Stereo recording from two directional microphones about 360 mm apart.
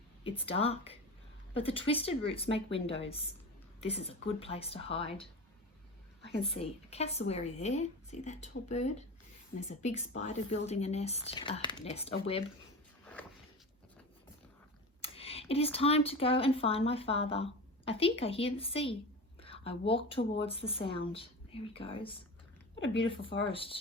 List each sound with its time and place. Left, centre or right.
0.3 s a woman's voice: centre
6.4 s a woman's voice: centre
13.2 s a sound: centre
15.0 s a woman's voice: centre